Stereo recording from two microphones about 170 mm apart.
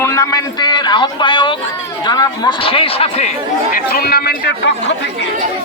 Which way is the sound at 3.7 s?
65° left (ahead or behind).